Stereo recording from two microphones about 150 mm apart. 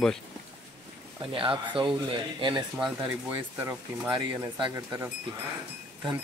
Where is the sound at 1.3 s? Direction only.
35° right (ahead or behind).